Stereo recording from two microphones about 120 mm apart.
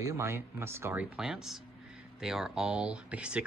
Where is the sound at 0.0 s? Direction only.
20° right (ahead or behind).